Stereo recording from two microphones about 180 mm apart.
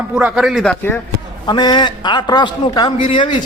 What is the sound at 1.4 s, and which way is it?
A man's voice, 25° left (ahead or behind).